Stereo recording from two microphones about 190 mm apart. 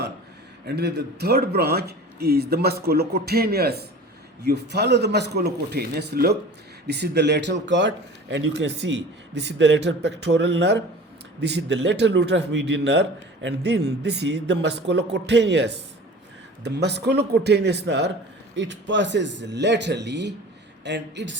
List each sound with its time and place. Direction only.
0.7 s a man's voice: 60° right (ahead or behind)